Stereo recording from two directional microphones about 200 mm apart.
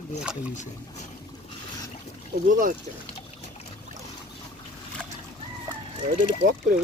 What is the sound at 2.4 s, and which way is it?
Speech, 45° right (ahead or behind).